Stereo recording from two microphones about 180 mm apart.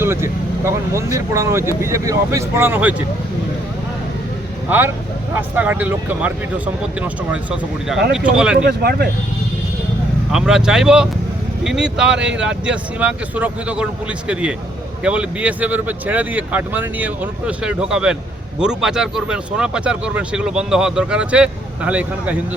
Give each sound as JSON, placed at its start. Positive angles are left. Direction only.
{"t": 0.0, "sound": "speech", "side_deg": -15}
{"t": 5.3, "sound": "speech", "side_deg": -10}
{"t": 8.6, "sound": "speech", "side_deg": -60}
{"t": 10.3, "sound": "speech", "side_deg": -5}
{"t": 15.0, "sound": "speech", "side_deg": -5}